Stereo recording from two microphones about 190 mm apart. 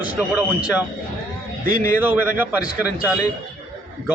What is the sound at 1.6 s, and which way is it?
Speech, 45° right (ahead or behind).